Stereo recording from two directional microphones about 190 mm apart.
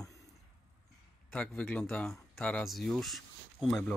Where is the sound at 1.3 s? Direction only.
5° left (ahead or behind).